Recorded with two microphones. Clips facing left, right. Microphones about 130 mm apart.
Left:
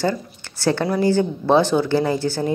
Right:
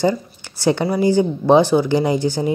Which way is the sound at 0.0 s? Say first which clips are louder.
Right 4 dB; 15° right (ahead or behind).